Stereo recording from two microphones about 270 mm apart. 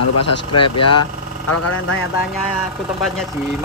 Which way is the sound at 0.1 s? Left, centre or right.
Left.